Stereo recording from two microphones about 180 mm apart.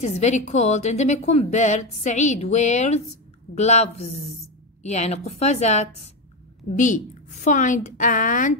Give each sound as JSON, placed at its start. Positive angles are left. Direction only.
{"t": 0.0, "sound": "a woman's voice", "side_deg": 40}